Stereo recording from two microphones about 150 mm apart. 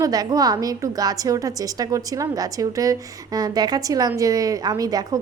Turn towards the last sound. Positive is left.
turn(degrees=-25)  # may be behind; listen again after turning